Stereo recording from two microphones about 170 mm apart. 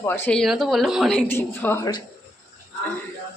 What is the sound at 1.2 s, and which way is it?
Speech, 10° left (ahead or behind).